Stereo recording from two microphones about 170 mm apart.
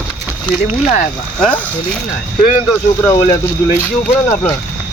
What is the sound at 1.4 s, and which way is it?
Speech, 5° left (ahead or behind).